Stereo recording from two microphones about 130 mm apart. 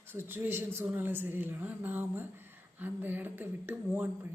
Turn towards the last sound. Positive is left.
turn(degrees=-15)  # may be behind; listen again after turning